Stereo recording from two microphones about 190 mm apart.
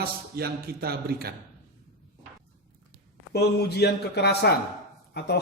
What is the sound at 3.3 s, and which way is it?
A man's voice, 60° left (ahead or behind).